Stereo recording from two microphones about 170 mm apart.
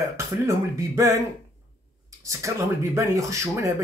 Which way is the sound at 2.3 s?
20° right (ahead or behind).